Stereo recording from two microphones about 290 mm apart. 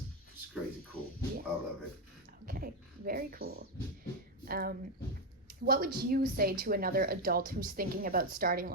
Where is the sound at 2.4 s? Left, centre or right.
Right.